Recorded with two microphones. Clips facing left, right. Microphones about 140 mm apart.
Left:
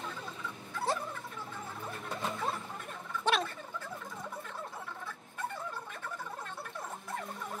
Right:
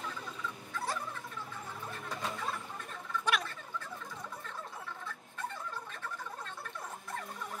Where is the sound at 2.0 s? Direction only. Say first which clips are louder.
Left 3 dB; 25° left (ahead or behind).